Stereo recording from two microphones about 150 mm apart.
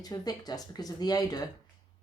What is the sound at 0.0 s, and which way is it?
Speech, 25° left (ahead or behind).